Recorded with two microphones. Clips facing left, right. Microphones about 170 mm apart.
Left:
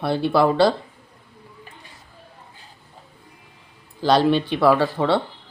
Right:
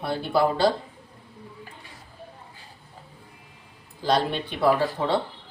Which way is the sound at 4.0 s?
85° left.